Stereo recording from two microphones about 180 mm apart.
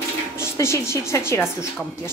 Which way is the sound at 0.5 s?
15° left (ahead or behind).